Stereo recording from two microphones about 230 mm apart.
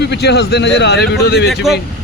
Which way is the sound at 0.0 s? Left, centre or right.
Left.